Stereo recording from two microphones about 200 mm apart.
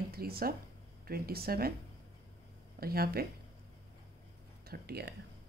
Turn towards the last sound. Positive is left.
turn(degrees=-55)  # may be behind; listen again after turning